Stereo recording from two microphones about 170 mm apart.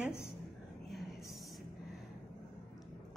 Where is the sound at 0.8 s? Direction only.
Centre (ahead or behind).